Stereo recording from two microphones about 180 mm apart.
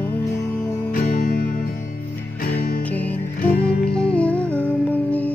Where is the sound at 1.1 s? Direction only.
50° left (ahead or behind).